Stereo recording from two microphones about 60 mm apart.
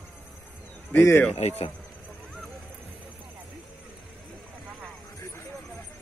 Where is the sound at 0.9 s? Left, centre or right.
Left.